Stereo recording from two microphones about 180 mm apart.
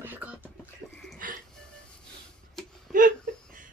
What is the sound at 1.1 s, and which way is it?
Music, 50° right (ahead or behind).